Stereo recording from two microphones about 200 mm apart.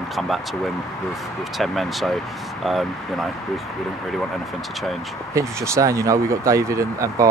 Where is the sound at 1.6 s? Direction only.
Centre (ahead or behind).